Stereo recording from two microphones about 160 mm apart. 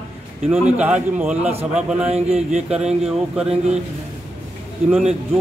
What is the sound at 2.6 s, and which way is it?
Speech, 5° right (ahead or behind).